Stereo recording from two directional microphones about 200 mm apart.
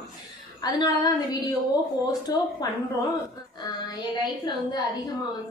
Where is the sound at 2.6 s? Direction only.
20° left (ahead or behind).